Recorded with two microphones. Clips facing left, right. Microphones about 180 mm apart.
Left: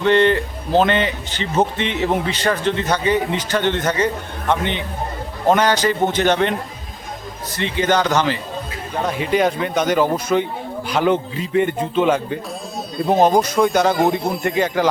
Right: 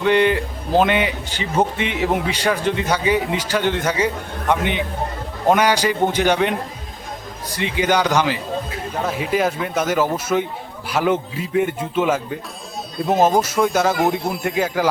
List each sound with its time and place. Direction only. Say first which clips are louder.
0.0 s speech: left 1 dB; 10° right (ahead or behind)
7.5 s speech: left 1 dB; 10° right (ahead or behind)